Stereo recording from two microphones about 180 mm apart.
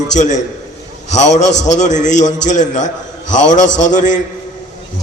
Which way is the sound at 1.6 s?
40° left (ahead or behind).